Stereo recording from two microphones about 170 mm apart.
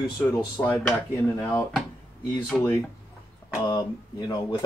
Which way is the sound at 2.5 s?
Centre (ahead or behind).